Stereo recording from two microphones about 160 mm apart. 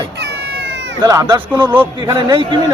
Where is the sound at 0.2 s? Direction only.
90° right.